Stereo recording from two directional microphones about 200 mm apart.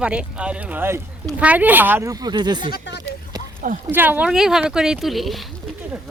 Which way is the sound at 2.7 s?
60° left (ahead or behind).